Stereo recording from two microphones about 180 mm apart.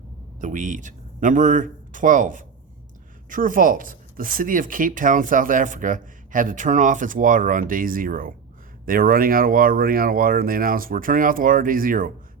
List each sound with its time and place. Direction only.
0.4 s speech: 45° right (ahead or behind)